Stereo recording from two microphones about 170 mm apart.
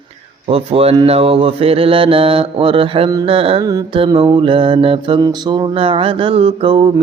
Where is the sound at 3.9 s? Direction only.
30° right (ahead or behind).